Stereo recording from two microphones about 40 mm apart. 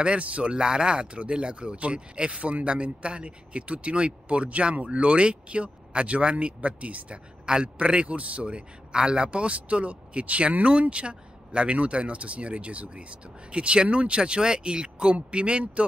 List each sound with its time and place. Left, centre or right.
0.0 s speech: right